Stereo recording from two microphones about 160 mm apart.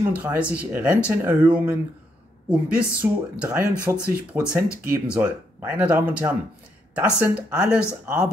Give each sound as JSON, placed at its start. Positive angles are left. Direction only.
{"t": 0.0, "sound": "speech", "side_deg": -10}